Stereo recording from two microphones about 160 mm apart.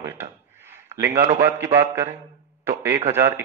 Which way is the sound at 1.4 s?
15° right (ahead or behind).